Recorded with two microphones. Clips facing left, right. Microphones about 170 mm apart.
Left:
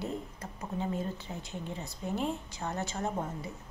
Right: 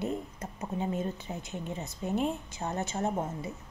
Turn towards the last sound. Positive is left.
turn(degrees=-20)  # may be behind; listen again after turning